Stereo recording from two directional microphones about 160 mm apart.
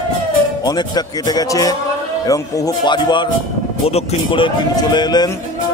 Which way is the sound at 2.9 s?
30° left (ahead or behind).